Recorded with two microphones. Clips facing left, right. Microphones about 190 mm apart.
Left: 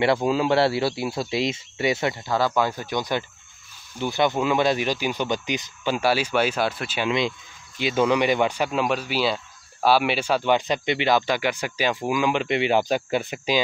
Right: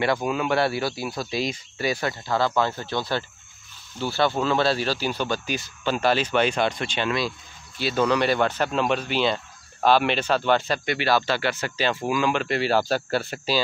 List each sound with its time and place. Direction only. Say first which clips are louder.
0.0 s speech: left 3 dB; 25° left (ahead or behind); by 7.1 s 5° left (ahead or behind)
7.1 s speech: left 2 dB; 20° left (ahead or behind)